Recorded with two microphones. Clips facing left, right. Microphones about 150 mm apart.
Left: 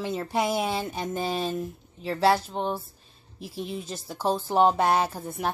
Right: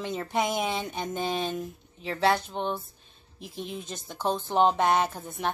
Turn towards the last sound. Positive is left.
turn(degrees=5)  # may be behind; listen again after turning